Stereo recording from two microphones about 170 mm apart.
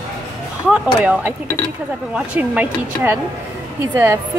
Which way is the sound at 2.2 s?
10° right (ahead or behind).